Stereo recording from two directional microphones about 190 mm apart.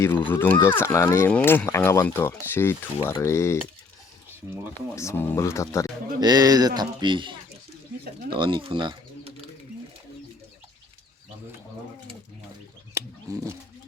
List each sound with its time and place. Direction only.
0.0 s speech: 10° left (ahead or behind)
4.9 s speech: 15° left (ahead or behind)
6.1 s speech: 20° right (ahead or behind)
8.3 s bird: 25° right (ahead or behind)
12.9 s a sound: 15° right (ahead or behind)